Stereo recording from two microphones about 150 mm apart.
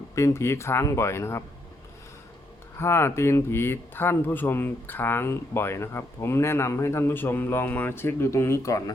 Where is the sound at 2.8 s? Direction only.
15° left (ahead or behind).